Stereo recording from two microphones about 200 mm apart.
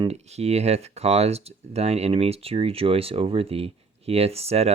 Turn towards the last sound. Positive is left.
turn(degrees=-30)  # may be behind; listen again after turning